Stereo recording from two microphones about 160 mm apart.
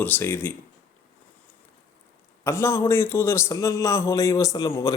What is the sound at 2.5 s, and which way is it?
A man's voice, 15° left (ahead or behind).